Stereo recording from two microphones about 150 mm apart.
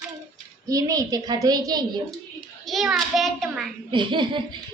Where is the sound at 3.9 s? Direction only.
30° right (ahead or behind).